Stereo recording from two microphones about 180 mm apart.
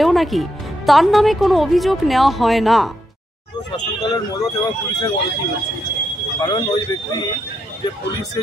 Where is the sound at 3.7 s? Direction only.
20° left (ahead or behind).